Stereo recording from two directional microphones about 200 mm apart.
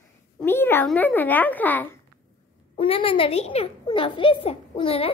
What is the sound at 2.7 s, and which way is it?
A woman's voice, 25° left (ahead or behind).